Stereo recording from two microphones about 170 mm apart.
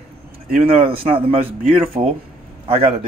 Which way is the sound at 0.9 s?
30° right (ahead or behind).